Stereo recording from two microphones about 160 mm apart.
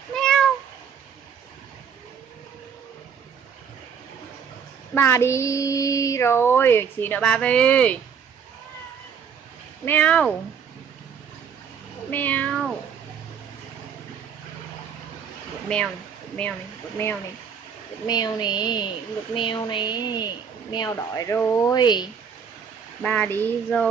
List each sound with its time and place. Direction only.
0.1 s cat: 5° left (ahead or behind)
4.9 s child singing: 15° left (ahead or behind)
9.8 s child singing: 10° left (ahead or behind)
12.1 s cat: 10° left (ahead or behind)
18.0 s a woman's voice: 25° left (ahead or behind)
21.7 s a woman's voice: 25° left (ahead or behind)
23.0 s child singing: 10° left (ahead or behind)